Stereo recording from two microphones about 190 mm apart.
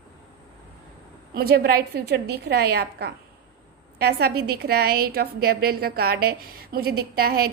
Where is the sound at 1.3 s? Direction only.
55° right (ahead or behind).